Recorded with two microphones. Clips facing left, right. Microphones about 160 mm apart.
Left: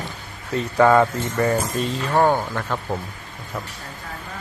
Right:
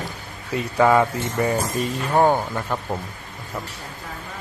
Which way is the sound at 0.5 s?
10° right (ahead or behind).